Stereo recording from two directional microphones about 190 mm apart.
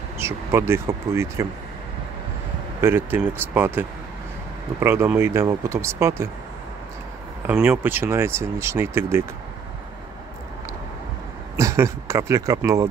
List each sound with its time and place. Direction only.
0.2 s speech: 15° right (ahead or behind)
2.8 s speech: 10° right (ahead or behind)
7.4 s speech: 5° right (ahead or behind)
11.5 s speech: 15° right (ahead or behind)